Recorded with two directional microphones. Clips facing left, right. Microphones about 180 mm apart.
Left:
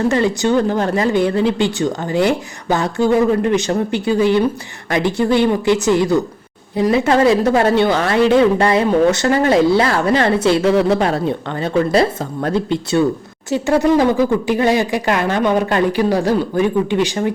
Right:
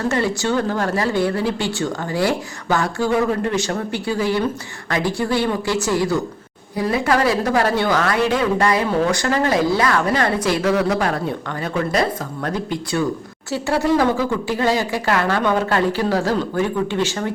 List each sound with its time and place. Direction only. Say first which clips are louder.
0.1 s speech: left 5 dB; 20° left (ahead or behind)